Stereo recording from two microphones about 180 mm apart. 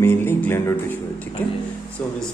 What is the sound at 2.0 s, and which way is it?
Speech, 5° left (ahead or behind).